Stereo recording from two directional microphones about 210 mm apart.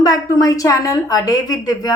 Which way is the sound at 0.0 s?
15° left (ahead or behind).